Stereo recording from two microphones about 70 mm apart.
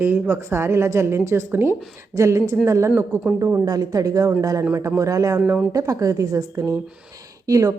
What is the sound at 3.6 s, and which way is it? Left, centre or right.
A woman's voice, right.